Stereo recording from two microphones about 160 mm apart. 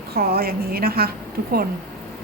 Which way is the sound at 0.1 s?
70° right (ahead or behind).